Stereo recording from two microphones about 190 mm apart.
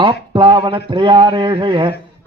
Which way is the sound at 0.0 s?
25° right (ahead or behind).